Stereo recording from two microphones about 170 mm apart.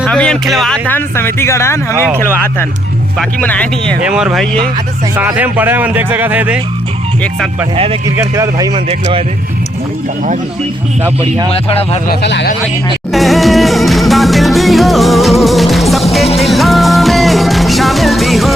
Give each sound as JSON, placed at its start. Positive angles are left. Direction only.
{"t": 0.0, "sound": "speech", "side_deg": 5}
{"t": 4.0, "sound": "speech", "side_deg": -5}
{"t": 8.1, "sound": "speech", "side_deg": -15}
{"t": 11.5, "sound": "speech", "side_deg": 35}
{"t": 12.2, "sound": "speech", "side_deg": 90}
{"t": 13.1, "sound": "music", "side_deg": 0}